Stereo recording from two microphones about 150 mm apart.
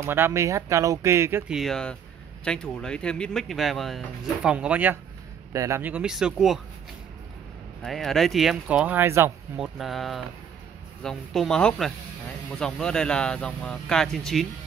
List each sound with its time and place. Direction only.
0.0 s speech: 15° right (ahead or behind)
1.5 s speech: centre (ahead or behind)
5.5 s speech: 20° right (ahead or behind); by 6.6 s 5° right (ahead or behind)
7.8 s speech: centre (ahead or behind); by 9.3 s 15° right (ahead or behind)
9.6 s speech: centre (ahead or behind)